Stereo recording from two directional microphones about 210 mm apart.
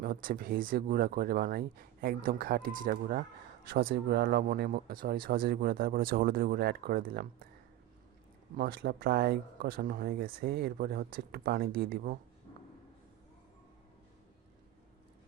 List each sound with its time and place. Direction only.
0.0 s speech: 40° right (ahead or behind)
8.5 s speech: 45° right (ahead or behind)